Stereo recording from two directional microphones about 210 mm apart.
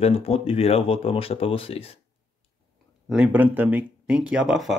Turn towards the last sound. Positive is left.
turn(degrees=0)  # may be behind; listen again after turning